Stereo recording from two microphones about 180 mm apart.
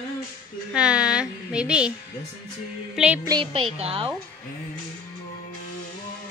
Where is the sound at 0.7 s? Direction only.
5° right (ahead or behind).